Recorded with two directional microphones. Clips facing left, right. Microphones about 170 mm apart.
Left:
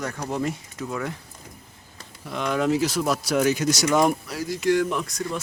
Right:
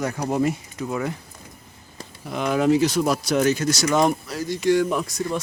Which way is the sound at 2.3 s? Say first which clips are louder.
Right 3 dB; 5° right (ahead or behind).